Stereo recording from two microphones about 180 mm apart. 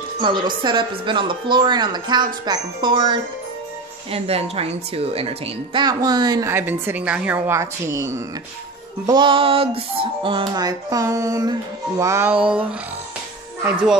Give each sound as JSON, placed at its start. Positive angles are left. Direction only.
{"t": 0.2, "sound": "speech", "side_deg": -25}
{"t": 12.0, "sound": "music", "side_deg": -15}